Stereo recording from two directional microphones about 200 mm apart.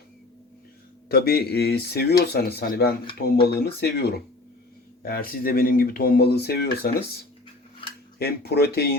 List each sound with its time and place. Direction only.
1.0 s speech: 50° left (ahead or behind)
8.2 s speech: 55° left (ahead or behind)